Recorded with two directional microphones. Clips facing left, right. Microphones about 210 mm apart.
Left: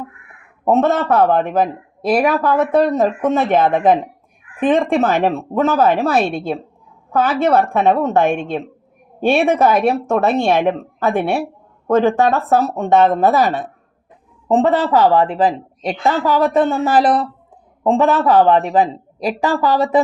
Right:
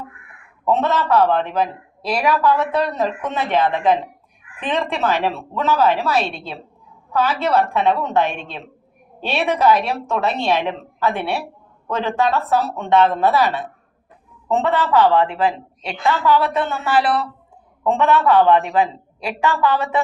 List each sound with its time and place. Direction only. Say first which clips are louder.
0.6 s speech: left 4 dB; 50° left (ahead or behind)
14.4 s a woman's voice: left 5 dB; 35° left (ahead or behind)